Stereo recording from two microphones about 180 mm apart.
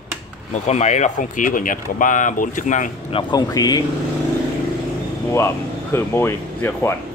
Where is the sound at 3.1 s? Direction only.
25° left (ahead or behind).